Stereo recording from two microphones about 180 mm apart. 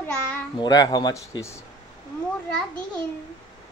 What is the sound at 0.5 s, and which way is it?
Speech, 20° left (ahead or behind).